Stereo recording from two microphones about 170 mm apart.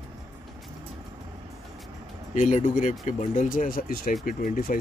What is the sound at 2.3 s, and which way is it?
Speech, 45° left (ahead or behind).